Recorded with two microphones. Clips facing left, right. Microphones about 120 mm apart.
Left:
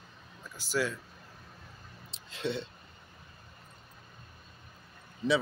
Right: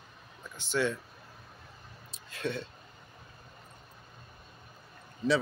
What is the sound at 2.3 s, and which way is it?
Speech, 20° left (ahead or behind).